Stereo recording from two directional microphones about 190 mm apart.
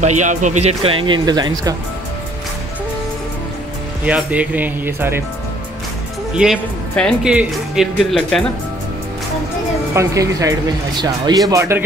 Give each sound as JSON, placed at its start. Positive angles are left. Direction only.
{"t": 0.0, "sound": "speech", "side_deg": -40}
{"t": 4.0, "sound": "speech", "side_deg": -5}
{"t": 6.3, "sound": "speech", "side_deg": -5}
{"t": 9.9, "sound": "speech", "side_deg": -15}